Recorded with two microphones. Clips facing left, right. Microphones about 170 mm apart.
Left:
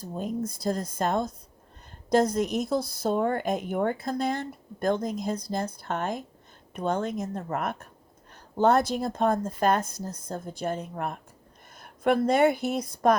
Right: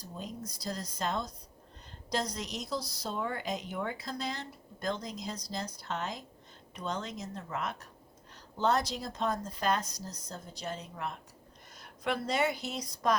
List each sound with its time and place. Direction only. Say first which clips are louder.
0.0 s speech: left 11 dB; 50° left (ahead or behind)